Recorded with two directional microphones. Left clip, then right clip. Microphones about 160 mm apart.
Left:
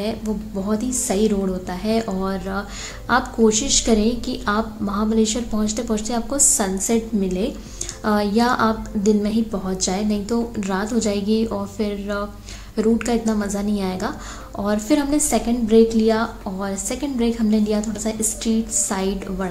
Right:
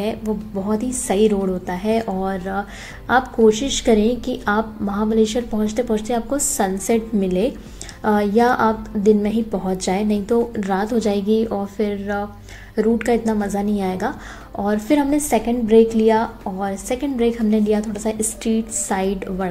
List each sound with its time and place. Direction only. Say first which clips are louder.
1.0 s a woman's voice: right 4 dB; 10° right (ahead or behind)
9.8 s a woman's voice: right 4 dB; 20° right (ahead or behind)
11.5 s a woman's voice: right 3 dB; 5° right (ahead or behind)